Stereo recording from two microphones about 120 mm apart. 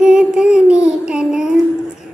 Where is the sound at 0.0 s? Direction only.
5° right (ahead or behind).